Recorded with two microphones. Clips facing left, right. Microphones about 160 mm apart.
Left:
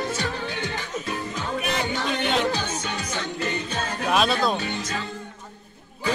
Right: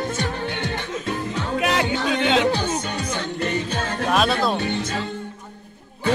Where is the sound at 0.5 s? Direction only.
55° right (ahead or behind).